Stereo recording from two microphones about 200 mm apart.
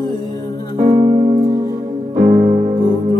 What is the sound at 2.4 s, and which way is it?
Music, 30° right (ahead or behind).